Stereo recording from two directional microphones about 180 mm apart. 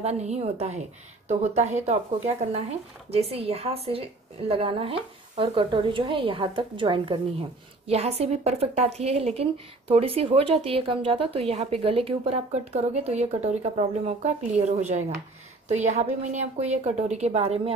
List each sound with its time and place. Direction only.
0.0 s a woman's voice: 40° right (ahead or behind)